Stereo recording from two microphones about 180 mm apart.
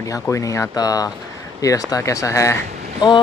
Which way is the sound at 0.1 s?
20° left (ahead or behind).